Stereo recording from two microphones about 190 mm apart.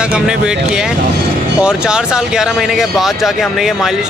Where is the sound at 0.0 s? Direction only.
5° right (ahead or behind).